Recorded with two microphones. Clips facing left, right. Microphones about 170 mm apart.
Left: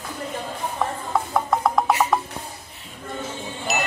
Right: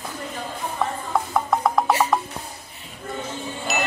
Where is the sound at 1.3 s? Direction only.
Centre (ahead or behind).